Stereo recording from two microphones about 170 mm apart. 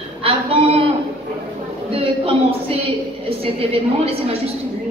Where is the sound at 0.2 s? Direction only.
35° right (ahead or behind).